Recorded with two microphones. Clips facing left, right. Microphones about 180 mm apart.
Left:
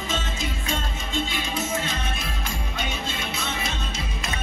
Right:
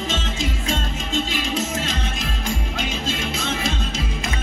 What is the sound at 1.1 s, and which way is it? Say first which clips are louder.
Music: right 4 dB; 90° right.